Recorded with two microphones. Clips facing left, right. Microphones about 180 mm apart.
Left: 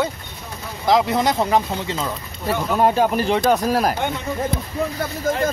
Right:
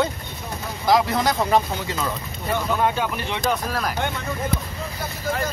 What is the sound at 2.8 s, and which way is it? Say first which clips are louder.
Speech: left 6 dB; 40° left (ahead or behind).